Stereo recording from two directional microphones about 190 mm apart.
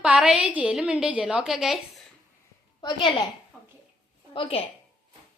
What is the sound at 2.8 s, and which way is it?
Speech, 25° left (ahead or behind).